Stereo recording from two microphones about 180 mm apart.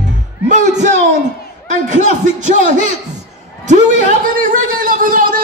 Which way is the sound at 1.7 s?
45° right (ahead or behind).